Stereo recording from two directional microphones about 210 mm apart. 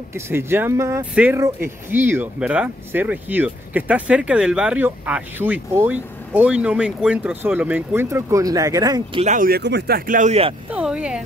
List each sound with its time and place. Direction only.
0.1 s speech: 10° right (ahead or behind)
9.2 s speech: 40° right (ahead or behind)
10.7 s speech: 5° right (ahead or behind)